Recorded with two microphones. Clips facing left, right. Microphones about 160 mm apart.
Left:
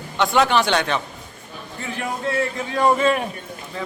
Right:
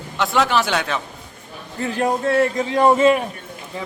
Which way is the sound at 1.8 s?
40° right (ahead or behind).